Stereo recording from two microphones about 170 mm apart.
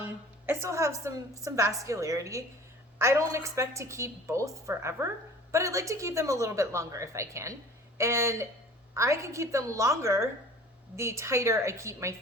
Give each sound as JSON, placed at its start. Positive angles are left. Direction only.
{"t": 0.0, "sound": "a woman's voice", "side_deg": -15}